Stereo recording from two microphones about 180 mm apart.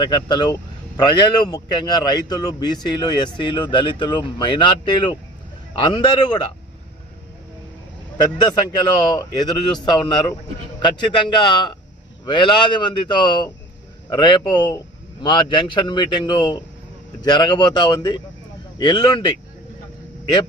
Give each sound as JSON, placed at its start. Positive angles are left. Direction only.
{"t": 0.0, "sound": "speech", "side_deg": 25}
{"t": 8.2, "sound": "speech", "side_deg": 20}